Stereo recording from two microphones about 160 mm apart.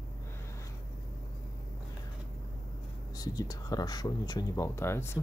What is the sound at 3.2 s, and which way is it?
Speech, 25° left (ahead or behind).